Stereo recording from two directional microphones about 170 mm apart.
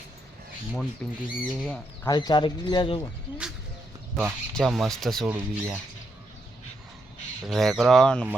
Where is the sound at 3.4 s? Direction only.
5° right (ahead or behind).